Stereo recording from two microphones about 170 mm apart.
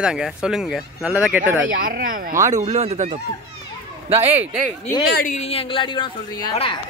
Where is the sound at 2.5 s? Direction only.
45° right (ahead or behind).